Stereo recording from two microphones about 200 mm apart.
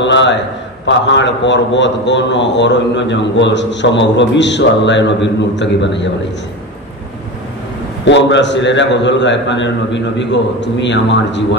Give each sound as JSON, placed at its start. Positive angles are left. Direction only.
{"t": 0.0, "sound": "a sound", "side_deg": 65}
{"t": 0.8, "sound": "a man's voice", "side_deg": 65}
{"t": 8.0, "sound": "a man's voice", "side_deg": 60}